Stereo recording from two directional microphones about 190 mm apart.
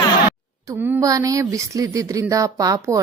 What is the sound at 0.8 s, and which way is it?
A woman's voice, 15° right (ahead or behind).